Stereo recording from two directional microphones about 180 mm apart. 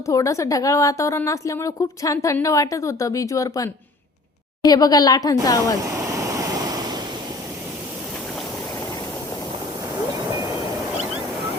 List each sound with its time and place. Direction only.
0.0 s a woman's voice: 20° left (ahead or behind)
6.1 s waves: 20° right (ahead or behind)